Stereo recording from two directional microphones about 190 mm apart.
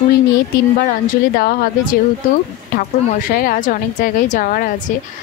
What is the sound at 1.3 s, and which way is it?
Speech, 50° left (ahead or behind).